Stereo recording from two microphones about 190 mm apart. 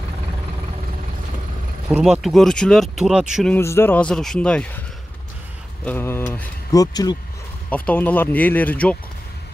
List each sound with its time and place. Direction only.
1.9 s speech: 5° right (ahead or behind)
3.5 s speech: 15° left (ahead or behind)
5.9 s speech: 10° left (ahead or behind)
7.7 s speech: 10° left (ahead or behind)